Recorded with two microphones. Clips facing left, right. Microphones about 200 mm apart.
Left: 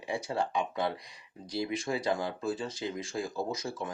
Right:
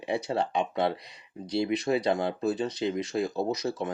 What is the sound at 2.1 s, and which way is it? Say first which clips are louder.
Speech: right 5 dB; 25° right (ahead or behind).